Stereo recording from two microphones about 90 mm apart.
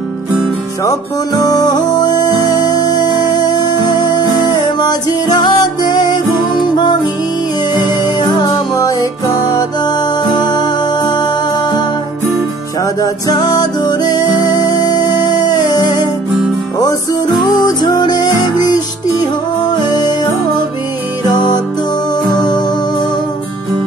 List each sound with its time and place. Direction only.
0.8 s music: 45° left (ahead or behind)
12.8 s music: 45° left (ahead or behind)
19.7 s music: 50° left (ahead or behind)